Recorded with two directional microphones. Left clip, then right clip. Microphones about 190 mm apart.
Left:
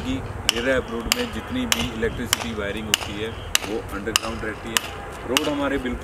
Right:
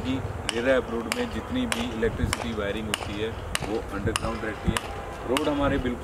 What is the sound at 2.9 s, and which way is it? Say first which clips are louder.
Speech: left 5 dB; 15° left (ahead or behind).